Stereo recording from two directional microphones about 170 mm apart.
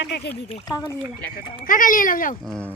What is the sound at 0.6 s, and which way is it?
Speech, 20° left (ahead or behind).